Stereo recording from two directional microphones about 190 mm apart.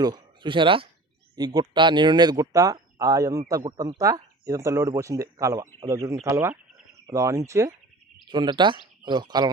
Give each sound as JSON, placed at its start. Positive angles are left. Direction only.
{"t": 0.0, "sound": "speech", "side_deg": -20}